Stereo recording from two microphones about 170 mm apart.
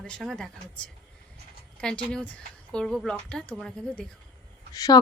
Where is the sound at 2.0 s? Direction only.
10° left (ahead or behind).